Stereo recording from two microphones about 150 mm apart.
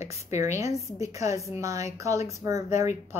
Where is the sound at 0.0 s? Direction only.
50° left (ahead or behind).